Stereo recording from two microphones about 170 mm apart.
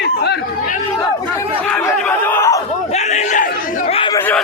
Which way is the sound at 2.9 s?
40° left (ahead or behind).